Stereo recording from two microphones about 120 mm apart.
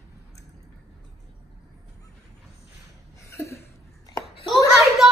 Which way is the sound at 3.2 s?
25° left (ahead or behind).